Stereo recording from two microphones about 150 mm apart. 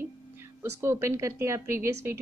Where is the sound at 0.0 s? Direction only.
15° right (ahead or behind).